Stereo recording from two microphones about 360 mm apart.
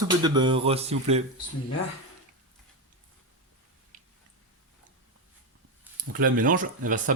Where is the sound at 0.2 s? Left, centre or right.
Centre.